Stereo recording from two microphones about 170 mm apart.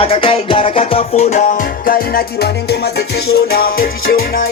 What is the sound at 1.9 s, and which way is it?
Music, 65° left (ahead or behind).